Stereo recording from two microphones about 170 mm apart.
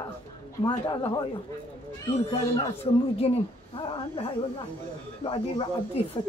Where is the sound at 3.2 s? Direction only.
30° left (ahead or behind).